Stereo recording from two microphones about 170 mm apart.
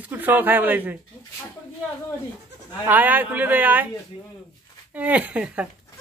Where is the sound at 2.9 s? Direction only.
10° right (ahead or behind).